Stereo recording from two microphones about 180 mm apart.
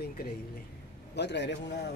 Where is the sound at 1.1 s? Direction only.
70° left (ahead or behind).